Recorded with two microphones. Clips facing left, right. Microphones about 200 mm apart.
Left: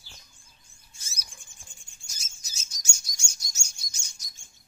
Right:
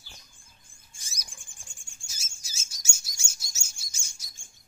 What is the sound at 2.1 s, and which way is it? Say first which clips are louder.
Bird: right 1 dB; 10° right (ahead or behind).